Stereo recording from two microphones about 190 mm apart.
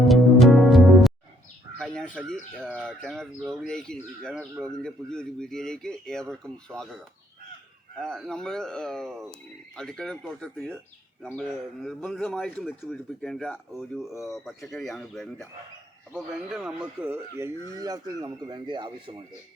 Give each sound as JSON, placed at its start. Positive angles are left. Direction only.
{"t": 0.0, "sound": "music", "side_deg": 0}
{"t": 1.8, "sound": "chicken", "side_deg": 0}
{"t": 2.6, "sound": "a man's voice", "side_deg": -5}
{"t": 7.9, "sound": "a man's voice", "side_deg": 0}